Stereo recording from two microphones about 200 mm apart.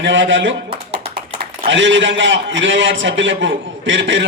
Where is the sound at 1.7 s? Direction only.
65° right (ahead or behind).